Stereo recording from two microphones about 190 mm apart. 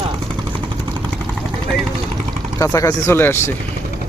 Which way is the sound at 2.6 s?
15° left (ahead or behind).